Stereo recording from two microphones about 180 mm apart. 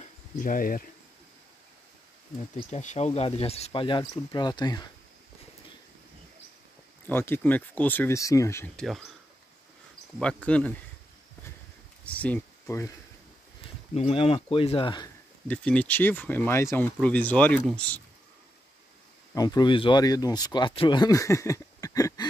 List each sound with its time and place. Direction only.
0.4 s speech: 50° left (ahead or behind)
2.5 s speech: 40° left (ahead or behind); by 4.9 s 20° left (ahead or behind)
7.1 s speech: 10° left (ahead or behind)
8.7 s speech: centre (ahead or behind)
10.1 s speech: 5° left (ahead or behind)
12.0 s speech: 10° left (ahead or behind)
13.9 s speech: 35° left (ahead or behind)
15.4 s speech: 5° left (ahead or behind)
19.3 s speech: 20° left (ahead or behind)